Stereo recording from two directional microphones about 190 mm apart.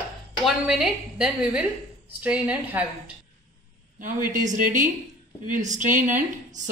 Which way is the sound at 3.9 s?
45° right (ahead or behind).